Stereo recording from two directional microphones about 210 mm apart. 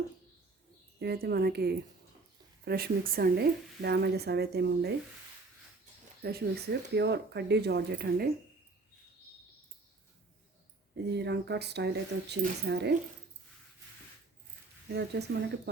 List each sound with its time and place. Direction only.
0.9 s speech: 50° right (ahead or behind)
6.2 s speech: 50° right (ahead or behind)
10.9 s speech: 50° right (ahead or behind)
14.9 s speech: 55° right (ahead or behind)